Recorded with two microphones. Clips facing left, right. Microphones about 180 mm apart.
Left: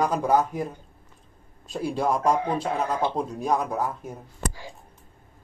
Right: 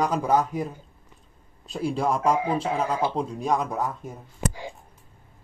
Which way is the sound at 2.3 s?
5° right (ahead or behind).